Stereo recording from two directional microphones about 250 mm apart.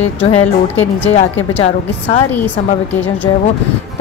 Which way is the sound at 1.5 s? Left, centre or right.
Left.